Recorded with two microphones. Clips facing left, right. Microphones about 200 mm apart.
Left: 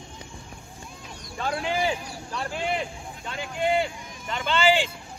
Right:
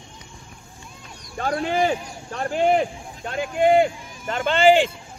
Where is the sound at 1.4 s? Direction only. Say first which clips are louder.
Right 5 dB; 50° right (ahead or behind).